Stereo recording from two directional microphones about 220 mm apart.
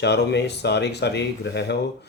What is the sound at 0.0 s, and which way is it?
Speech, 50° left (ahead or behind).